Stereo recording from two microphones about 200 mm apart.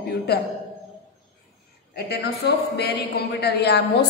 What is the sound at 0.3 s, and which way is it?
Speech, 55° left (ahead or behind).